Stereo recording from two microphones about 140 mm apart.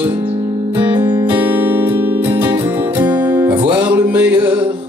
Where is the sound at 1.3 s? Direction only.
15° right (ahead or behind).